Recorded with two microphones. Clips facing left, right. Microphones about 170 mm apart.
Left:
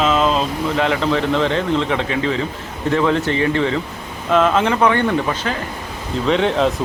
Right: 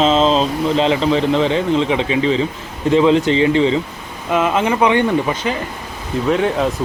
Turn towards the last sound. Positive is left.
turn(degrees=-5)  # may be behind; listen again after turning